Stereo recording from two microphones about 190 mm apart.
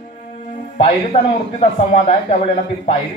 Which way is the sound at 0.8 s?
35° left (ahead or behind).